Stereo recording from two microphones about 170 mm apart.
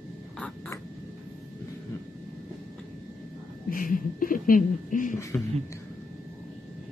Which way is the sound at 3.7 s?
55° left (ahead or behind).